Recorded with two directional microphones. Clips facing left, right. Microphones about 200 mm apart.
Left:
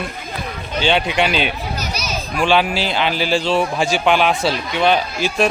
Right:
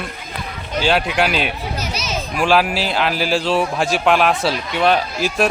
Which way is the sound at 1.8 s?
25° right (ahead or behind).